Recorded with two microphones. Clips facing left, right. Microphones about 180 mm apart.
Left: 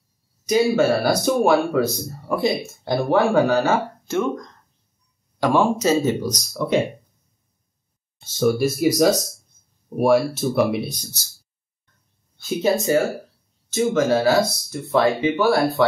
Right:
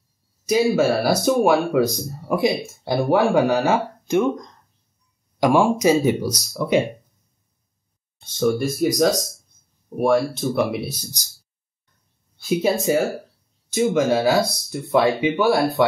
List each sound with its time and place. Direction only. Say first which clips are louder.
0.7 s speech: even; 5° right (ahead or behind)
8.2 s speech: left 1 dB; 5° left (ahead or behind); by 11.2 s 10° right (ahead or behind)
12.4 s speech: even; 10° right (ahead or behind)